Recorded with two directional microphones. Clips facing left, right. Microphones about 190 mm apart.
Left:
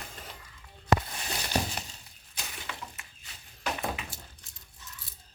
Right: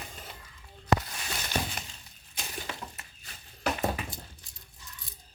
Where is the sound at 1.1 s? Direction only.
35° left (ahead or behind).